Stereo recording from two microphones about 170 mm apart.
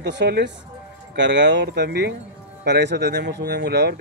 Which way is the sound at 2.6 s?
85° right.